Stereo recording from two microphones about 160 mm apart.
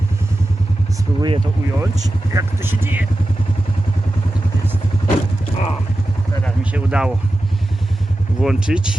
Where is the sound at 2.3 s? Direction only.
15° right (ahead or behind).